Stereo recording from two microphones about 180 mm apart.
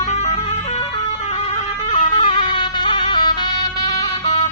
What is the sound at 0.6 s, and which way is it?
Vehicle, 35° left (ahead or behind).